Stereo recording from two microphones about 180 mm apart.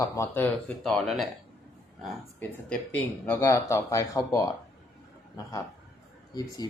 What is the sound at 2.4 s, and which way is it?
Speech, 10° left (ahead or behind).